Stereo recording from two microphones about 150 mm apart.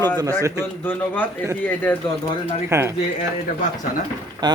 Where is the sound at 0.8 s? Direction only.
15° left (ahead or behind).